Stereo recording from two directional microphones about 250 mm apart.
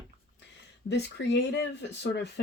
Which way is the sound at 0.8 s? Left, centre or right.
Left.